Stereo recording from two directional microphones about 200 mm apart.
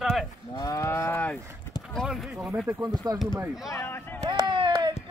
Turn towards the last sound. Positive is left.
turn(degrees=-20)  # may be behind; listen again after turning